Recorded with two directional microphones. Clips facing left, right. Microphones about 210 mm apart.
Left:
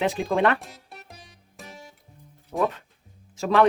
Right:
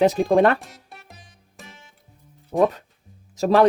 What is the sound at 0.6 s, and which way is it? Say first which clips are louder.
Music: even; centre (ahead or behind).